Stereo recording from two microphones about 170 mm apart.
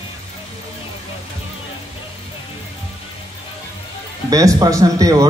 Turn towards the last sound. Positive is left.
turn(degrees=-20)  # may be behind; listen again after turning